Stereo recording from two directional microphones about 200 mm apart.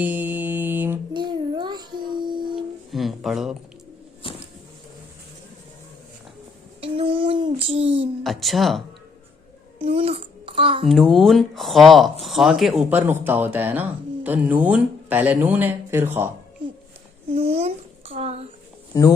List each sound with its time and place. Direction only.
0.0 s mantra: 10° right (ahead or behind)
1.1 s child singing: 20° right (ahead or behind)
2.9 s music: centre (ahead or behind)
6.8 s child singing: 30° right (ahead or behind)
8.2 s speech: centre (ahead or behind)
9.7 s a child's voice: 30° right (ahead or behind)
10.8 s speech: centre (ahead or behind)
17.3 s a child's voice: 30° right (ahead or behind)
18.9 s speech: 15° left (ahead or behind)